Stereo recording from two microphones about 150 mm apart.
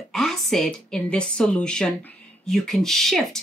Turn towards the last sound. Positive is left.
turn(degrees=5)  # may be behind; listen again after turning